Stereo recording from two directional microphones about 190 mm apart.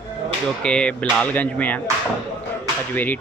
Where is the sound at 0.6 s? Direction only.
5° left (ahead or behind).